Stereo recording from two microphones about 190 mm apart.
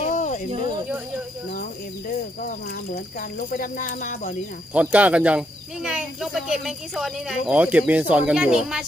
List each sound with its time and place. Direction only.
0.0 s snake: 40° left (ahead or behind)
2.9 s speech: 50° left (ahead or behind)
4.7 s speech: 5° right (ahead or behind)